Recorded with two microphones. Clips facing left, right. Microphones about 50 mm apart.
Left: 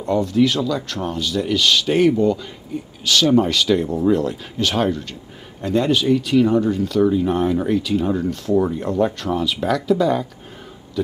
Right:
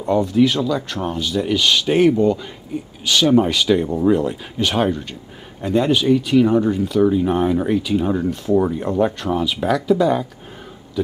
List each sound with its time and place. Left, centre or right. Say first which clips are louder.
0.0 s speech: right 1 dB; centre